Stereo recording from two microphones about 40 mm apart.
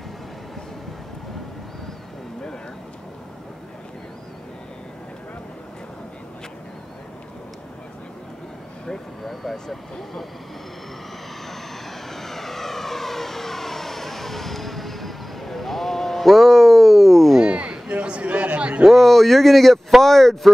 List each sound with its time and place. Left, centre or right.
8.8 s vehicle: centre
9.3 s speech: centre
12.1 s vehicle: centre
17.4 s a sound: right
18.9 s a sound: centre
20.0 s speech: centre